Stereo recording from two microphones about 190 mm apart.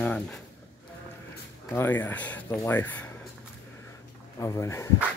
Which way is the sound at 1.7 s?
10° left (ahead or behind).